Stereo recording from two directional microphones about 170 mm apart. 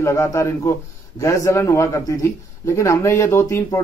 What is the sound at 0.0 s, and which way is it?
A man's voice, 15° left (ahead or behind).